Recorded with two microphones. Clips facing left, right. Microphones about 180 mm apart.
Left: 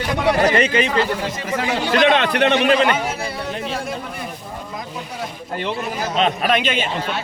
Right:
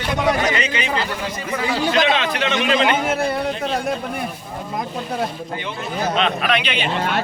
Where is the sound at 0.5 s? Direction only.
50° left (ahead or behind).